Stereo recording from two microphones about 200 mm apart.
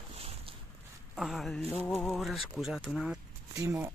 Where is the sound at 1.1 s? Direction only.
Centre (ahead or behind).